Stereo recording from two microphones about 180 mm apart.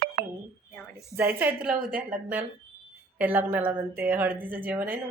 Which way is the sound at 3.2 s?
10° right (ahead or behind).